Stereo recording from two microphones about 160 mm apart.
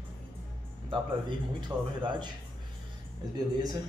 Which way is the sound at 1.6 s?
30° right (ahead or behind).